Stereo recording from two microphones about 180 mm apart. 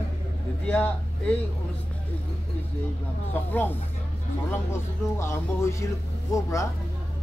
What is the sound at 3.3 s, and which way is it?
Speech, 10° left (ahead or behind).